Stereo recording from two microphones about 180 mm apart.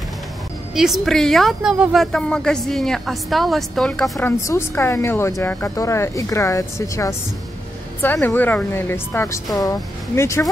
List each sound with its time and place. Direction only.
0.7 s a woman's voice: centre (ahead or behind); by 10.4 s 15° left (ahead or behind)